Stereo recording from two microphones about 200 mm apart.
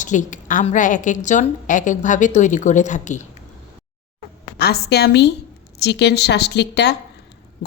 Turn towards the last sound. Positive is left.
turn(degrees=55)  # may be behind; listen again after turning